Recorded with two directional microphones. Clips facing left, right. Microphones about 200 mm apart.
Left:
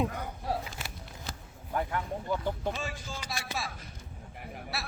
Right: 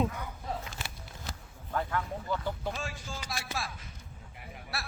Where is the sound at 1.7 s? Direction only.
20° left (ahead or behind).